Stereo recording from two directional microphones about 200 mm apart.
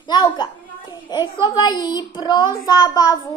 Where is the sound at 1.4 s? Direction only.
20° left (ahead or behind).